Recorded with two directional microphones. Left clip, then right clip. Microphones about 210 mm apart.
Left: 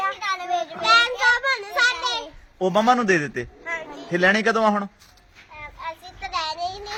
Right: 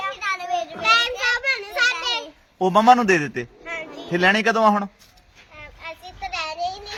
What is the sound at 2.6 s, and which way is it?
Speech, 10° right (ahead or behind).